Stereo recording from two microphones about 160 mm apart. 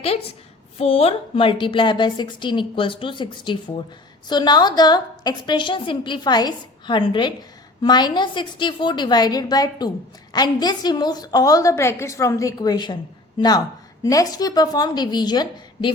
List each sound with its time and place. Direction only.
0.8 s a woman's voice: 35° left (ahead or behind)
14.0 s a woman's voice: 20° left (ahead or behind)